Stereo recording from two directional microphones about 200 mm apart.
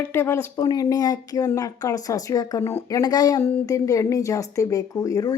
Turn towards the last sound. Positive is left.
turn(degrees=15)  # may be behind; listen again after turning